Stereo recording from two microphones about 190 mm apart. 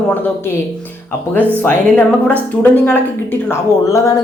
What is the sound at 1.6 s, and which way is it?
A woman's voice, 10° left (ahead or behind).